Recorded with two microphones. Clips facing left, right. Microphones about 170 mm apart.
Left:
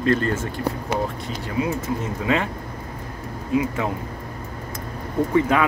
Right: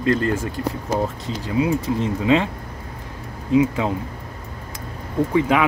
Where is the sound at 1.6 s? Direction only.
20° right (ahead or behind).